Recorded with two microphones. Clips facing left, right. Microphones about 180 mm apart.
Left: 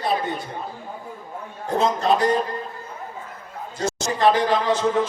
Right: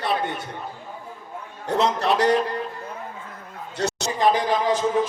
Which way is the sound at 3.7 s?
70° right (ahead or behind).